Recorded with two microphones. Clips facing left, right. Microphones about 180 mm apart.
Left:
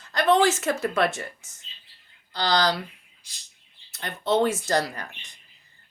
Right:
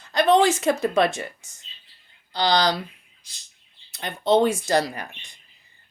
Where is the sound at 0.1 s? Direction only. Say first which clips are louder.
Right 2 dB; 15° right (ahead or behind).